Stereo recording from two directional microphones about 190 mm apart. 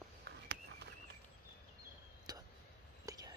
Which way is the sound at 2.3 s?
20° right (ahead or behind).